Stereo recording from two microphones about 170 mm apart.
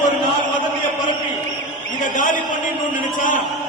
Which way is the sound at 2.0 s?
50° left (ahead or behind).